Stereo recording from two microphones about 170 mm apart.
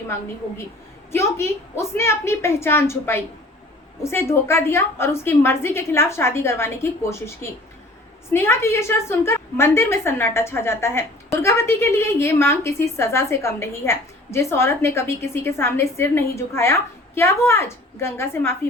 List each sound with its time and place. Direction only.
1.1 s a woman's voice: 15° left (ahead or behind)